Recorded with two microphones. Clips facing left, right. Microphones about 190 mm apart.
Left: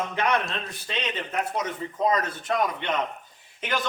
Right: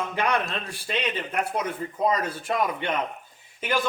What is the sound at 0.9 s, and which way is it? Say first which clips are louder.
A man's voice: right 3 dB; 10° right (ahead or behind).